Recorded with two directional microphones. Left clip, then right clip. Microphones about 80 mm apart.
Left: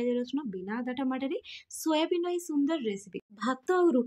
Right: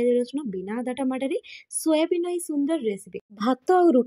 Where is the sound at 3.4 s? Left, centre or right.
Right.